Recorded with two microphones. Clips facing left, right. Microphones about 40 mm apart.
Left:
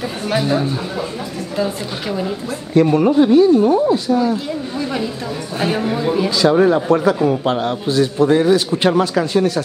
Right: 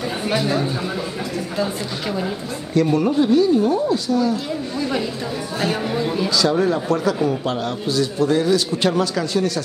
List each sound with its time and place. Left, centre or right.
0.3 s a man's voice: centre
2.7 s a man's voice: left
5.8 s a man's voice: centre
6.6 s a man's voice: left